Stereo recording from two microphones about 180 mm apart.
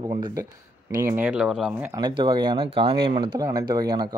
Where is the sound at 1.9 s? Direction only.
25° right (ahead or behind).